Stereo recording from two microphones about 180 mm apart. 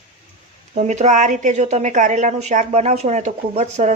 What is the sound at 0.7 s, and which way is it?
A woman's voice, 40° right (ahead or behind).